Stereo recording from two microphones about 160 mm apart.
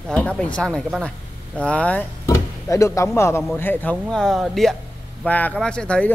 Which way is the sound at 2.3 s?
20° left (ahead or behind).